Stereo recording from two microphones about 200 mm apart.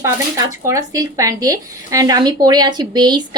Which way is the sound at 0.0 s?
15° right (ahead or behind).